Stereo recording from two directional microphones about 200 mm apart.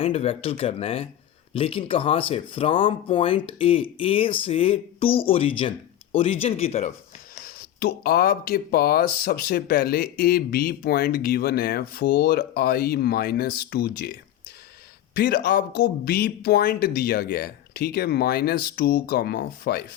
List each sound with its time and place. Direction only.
0.0 s speech: 30° left (ahead or behind)
7.4 s speech: 50° left (ahead or behind)